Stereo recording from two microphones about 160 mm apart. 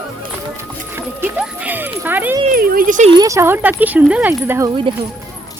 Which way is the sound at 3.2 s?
20° right (ahead or behind).